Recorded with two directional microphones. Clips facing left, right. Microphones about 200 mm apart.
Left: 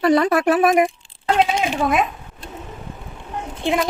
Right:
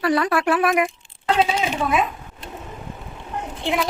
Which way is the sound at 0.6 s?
35° left (ahead or behind).